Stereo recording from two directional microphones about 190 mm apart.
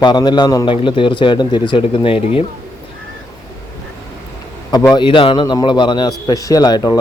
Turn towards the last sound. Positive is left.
turn(degrees=20)  # may be behind; listen again after turning